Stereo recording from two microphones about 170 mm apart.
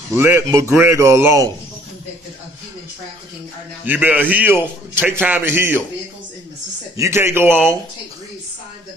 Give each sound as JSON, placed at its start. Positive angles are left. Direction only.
{"t": 0.1, "sound": "a man's voice", "side_deg": -15}
{"t": 3.8, "sound": "a man's voice", "side_deg": -10}
{"t": 7.0, "sound": "a man's voice", "side_deg": -15}